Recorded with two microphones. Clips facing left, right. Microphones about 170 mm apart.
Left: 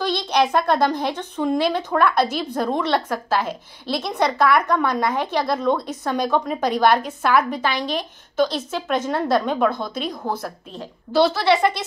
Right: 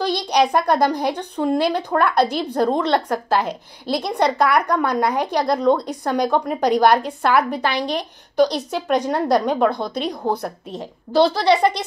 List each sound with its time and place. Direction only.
0.0 s a woman's voice: 15° right (ahead or behind)